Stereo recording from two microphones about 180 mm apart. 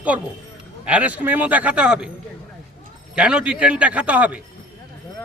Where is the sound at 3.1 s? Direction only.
5° right (ahead or behind).